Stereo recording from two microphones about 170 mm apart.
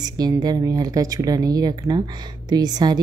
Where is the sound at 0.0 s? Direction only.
25° right (ahead or behind).